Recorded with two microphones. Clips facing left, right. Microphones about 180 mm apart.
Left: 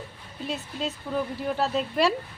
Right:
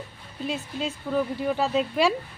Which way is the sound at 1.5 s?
Centre (ahead or behind).